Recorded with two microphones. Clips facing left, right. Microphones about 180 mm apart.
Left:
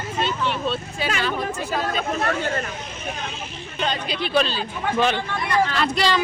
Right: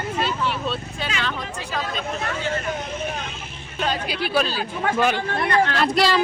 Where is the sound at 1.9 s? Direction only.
55° left (ahead or behind).